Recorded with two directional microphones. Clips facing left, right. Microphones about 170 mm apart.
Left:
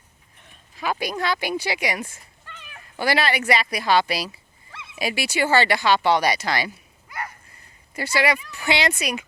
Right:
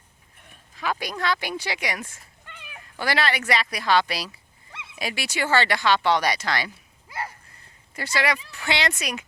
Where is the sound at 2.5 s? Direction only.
15° right (ahead or behind).